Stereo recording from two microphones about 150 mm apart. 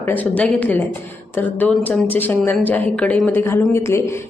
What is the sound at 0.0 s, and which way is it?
Speech, 10° left (ahead or behind).